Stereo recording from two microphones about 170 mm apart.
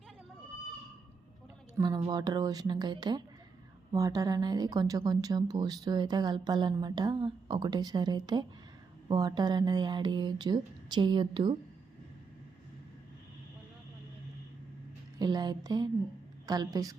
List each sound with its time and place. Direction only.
2.0 s a woman's voice: 25° right (ahead or behind)
15.2 s a woman's voice: 25° right (ahead or behind)